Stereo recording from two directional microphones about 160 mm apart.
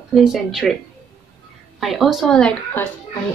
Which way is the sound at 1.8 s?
Centre (ahead or behind).